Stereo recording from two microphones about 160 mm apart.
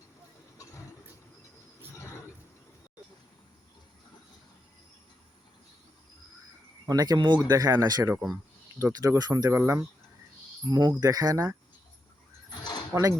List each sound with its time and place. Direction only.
6.8 s speech: 25° right (ahead or behind)
8.1 s speech: centre (ahead or behind)
8.8 s speech: 20° right (ahead or behind)
12.5 s a sound: 25° left (ahead or behind)
12.9 s speech: 20° right (ahead or behind)